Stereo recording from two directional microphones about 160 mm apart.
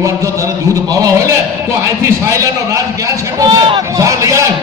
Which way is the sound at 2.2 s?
20° right (ahead or behind).